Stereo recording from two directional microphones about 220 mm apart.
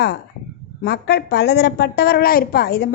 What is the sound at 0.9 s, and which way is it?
A woman's voice, 50° left (ahead or behind).